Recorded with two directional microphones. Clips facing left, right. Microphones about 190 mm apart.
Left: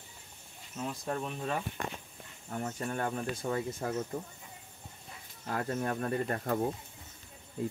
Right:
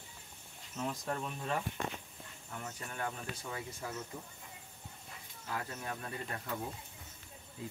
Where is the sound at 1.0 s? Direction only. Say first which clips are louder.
Left 4 dB; 20° left (ahead or behind).